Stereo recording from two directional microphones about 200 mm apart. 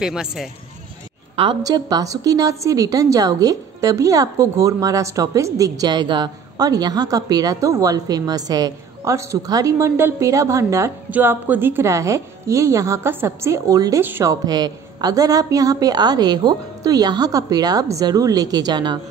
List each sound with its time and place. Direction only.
0.0 s speech: 5° right (ahead or behind)
1.3 s a woman's voice: 25° right (ahead or behind)